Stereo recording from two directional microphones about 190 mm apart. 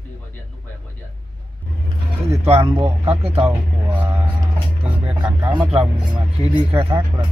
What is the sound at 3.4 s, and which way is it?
A man's voice, 10° right (ahead or behind).